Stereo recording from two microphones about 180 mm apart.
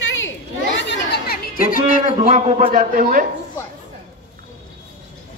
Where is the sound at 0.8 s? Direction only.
70° left (ahead or behind); by 2.0 s 50° left (ahead or behind).